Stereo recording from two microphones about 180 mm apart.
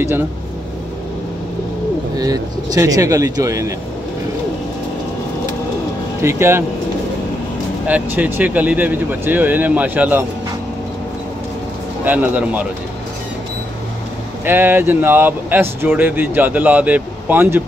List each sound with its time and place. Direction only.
2.1 s speech: 20° right (ahead or behind)
6.2 s speech: 15° right (ahead or behind)
7.8 s speech: 10° right (ahead or behind)
12.0 s speech: 10° right (ahead or behind)
14.4 s speech: 10° right (ahead or behind)